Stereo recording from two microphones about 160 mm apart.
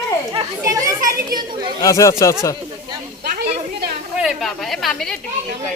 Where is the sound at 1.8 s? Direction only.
20° left (ahead or behind).